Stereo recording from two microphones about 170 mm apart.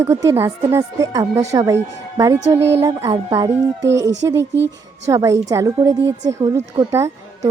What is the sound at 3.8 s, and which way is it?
Speech, 90° right.